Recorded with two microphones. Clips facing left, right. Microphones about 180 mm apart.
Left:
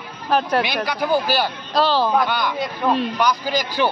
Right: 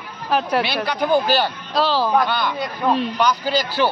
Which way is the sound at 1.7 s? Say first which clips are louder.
Left 1 dB; centre (ahead or behind).